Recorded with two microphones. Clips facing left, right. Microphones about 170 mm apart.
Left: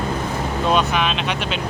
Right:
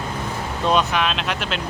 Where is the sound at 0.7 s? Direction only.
Centre (ahead or behind).